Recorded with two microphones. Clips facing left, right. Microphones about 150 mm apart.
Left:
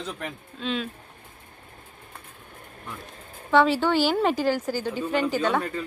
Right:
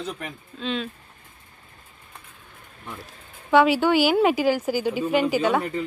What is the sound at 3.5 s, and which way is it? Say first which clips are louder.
Speech: right 2 dB; 10° right (ahead or behind).